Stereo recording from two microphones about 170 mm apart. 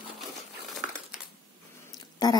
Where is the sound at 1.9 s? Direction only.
25° left (ahead or behind).